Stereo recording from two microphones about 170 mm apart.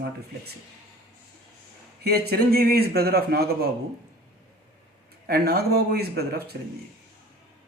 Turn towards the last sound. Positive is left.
turn(degrees=-70)  # may be behind; listen again after turning